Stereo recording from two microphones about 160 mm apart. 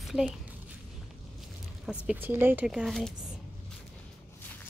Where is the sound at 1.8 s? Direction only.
10° right (ahead or behind).